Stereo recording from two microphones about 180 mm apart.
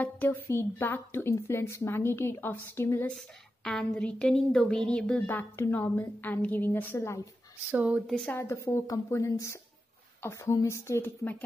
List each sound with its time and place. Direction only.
0.0 s a woman's voice: 10° left (ahead or behind)
3.1 s a woman's voice: centre (ahead or behind)
7.7 s a woman's voice: 5° right (ahead or behind)
8.3 s a woman's voice: 15° left (ahead or behind)